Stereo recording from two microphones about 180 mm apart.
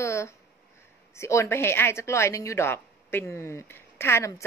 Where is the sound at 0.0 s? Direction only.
15° left (ahead or behind).